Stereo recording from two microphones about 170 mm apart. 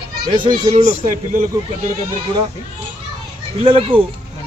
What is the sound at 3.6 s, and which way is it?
Speech, 30° right (ahead or behind).